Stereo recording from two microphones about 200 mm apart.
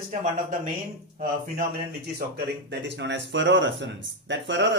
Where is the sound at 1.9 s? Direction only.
50° right (ahead or behind).